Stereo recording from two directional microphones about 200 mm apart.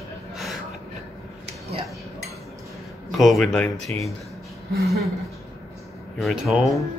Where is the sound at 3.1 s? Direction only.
Centre (ahead or behind).